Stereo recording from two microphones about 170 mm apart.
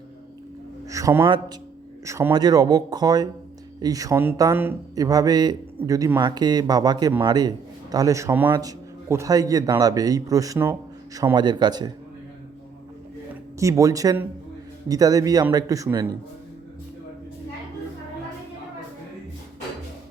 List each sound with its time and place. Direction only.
0.9 s music: 20° right (ahead or behind)
2.0 s a man's voice: 15° right (ahead or behind)
13.6 s a man's voice: 20° right (ahead or behind)